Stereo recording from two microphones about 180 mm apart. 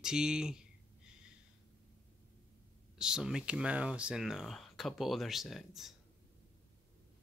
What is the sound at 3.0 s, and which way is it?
Speech, 5° right (ahead or behind).